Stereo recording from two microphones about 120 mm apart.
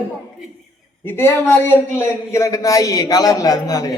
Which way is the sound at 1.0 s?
20° left (ahead or behind).